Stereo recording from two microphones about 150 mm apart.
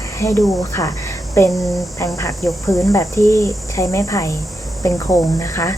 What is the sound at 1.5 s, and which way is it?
Speech, centre (ahead or behind).